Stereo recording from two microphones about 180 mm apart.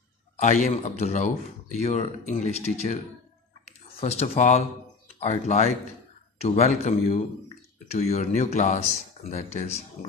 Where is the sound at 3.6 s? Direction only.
35° left (ahead or behind).